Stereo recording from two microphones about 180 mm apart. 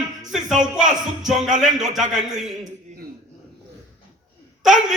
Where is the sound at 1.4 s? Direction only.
40° right (ahead or behind).